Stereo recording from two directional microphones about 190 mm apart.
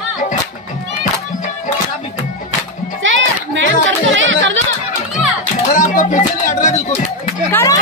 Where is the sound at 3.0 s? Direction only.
80° right.